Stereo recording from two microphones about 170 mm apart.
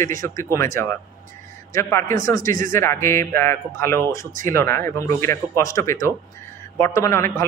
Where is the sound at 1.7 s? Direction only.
15° left (ahead or behind).